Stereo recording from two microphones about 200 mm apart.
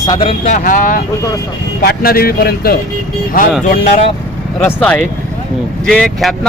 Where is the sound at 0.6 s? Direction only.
40° left (ahead or behind).